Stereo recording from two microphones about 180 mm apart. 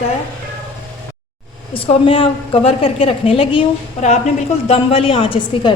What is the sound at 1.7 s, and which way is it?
A woman's voice, 30° left (ahead or behind).